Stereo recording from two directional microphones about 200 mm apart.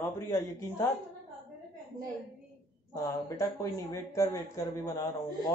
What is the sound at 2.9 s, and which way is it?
A man's voice, 15° left (ahead or behind).